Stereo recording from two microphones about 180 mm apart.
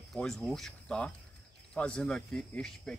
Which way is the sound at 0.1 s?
Centre (ahead or behind).